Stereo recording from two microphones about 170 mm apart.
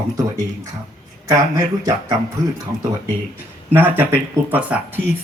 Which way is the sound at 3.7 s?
10° right (ahead or behind).